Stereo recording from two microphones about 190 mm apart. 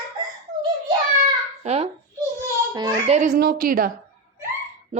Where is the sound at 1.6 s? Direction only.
35° right (ahead or behind).